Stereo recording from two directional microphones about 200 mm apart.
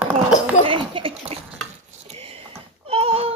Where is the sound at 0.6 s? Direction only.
25° right (ahead or behind).